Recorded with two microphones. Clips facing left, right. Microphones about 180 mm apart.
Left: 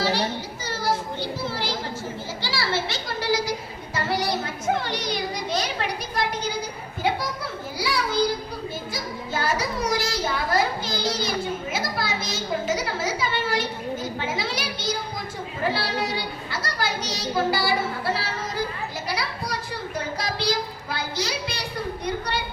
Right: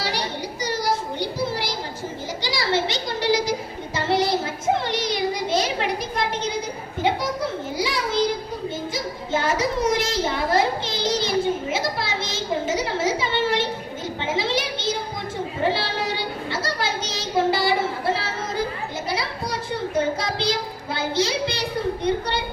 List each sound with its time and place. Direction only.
0.0 s children playing: 15° right (ahead or behind)
2.4 s a sound: 15° right (ahead or behind)
3.9 s child singing: 25° right (ahead or behind)
7.8 s a sound: 20° right (ahead or behind)
15.6 s child singing: 25° right (ahead or behind)
20.0 s child singing: 25° right (ahead or behind)